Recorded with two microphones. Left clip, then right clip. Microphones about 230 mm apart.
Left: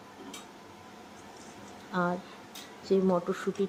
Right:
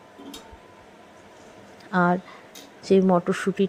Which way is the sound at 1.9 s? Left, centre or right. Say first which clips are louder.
Right 9 dB; right.